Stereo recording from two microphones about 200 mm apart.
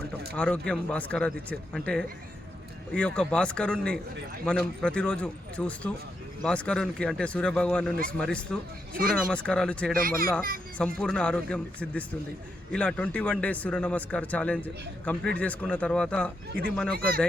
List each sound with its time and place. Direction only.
0.3 s a man's voice: 5° left (ahead or behind)
10.0 s a child's voice: 45° right (ahead or behind)
10.8 s a man's voice: 5° left (ahead or behind)